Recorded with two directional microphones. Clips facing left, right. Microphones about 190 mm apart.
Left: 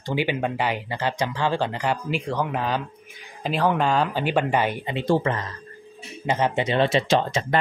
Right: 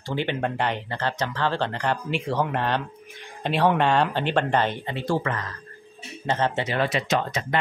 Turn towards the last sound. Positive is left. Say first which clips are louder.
# left 3 dB
turn(degrees=30)  # may be behind; listen again after turning